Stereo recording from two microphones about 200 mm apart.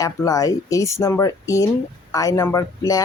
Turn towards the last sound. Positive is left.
turn(degrees=15)  # may be behind; listen again after turning